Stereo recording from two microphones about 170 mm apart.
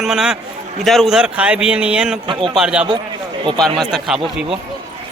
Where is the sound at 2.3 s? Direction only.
30° right (ahead or behind).